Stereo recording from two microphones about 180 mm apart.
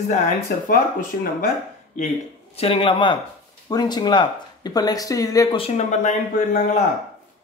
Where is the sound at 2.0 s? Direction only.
45° left (ahead or behind).